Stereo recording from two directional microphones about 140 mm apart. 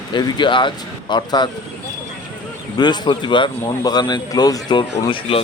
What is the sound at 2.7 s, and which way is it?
Speech, 30° left (ahead or behind).